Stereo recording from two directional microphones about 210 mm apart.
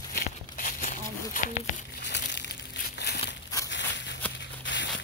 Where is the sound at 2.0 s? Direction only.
55° left (ahead or behind).